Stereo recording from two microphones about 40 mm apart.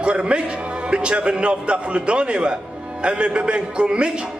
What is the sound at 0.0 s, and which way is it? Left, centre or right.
A man's voice, right.